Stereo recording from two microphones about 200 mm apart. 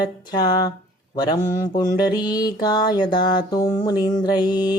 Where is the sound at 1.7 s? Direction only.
20° left (ahead or behind).